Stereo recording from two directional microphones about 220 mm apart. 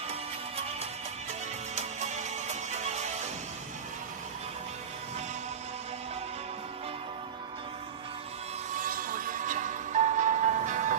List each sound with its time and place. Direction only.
1.8 s music: 30° right (ahead or behind)
8.8 s music: 40° right (ahead or behind)